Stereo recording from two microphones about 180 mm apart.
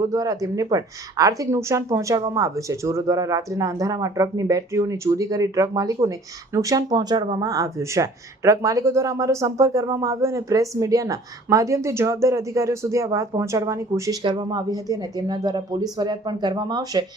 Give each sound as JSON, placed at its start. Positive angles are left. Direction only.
{"t": 0.0, "sound": "speech", "side_deg": -20}